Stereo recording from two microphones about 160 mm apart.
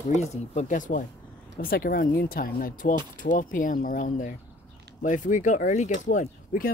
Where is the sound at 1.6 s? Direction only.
70° left (ahead or behind); by 6.3 s 50° left (ahead or behind).